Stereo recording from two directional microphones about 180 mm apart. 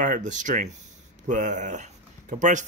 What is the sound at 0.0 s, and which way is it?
Speech, 45° right (ahead or behind).